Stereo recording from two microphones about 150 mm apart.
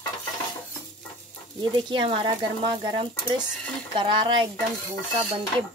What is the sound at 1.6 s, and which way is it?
Speech, 30° right (ahead or behind).